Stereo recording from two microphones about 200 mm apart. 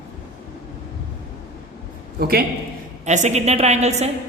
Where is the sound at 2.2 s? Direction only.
50° right (ahead or behind).